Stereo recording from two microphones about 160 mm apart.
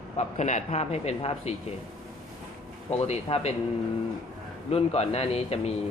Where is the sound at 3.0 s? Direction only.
40° left (ahead or behind).